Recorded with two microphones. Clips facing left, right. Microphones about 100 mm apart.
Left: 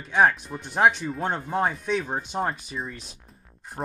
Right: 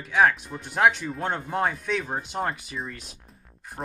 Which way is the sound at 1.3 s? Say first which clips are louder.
Even; 15° left (ahead or behind).